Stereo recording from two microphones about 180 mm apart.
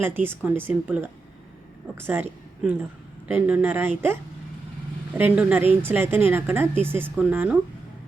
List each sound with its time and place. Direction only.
0.0 s speech: 10° right (ahead or behind)
3.2 s speech: 10° right (ahead or behind)